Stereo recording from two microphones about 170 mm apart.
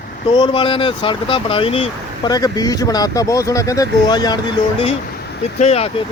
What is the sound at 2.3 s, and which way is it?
Speech, 20° left (ahead or behind).